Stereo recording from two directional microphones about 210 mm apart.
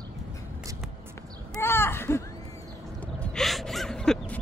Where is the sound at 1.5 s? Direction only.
10° left (ahead or behind).